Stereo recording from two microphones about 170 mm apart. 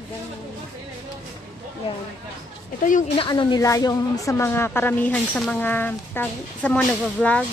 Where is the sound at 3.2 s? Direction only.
30° left (ahead or behind); by 7.4 s 5° left (ahead or behind).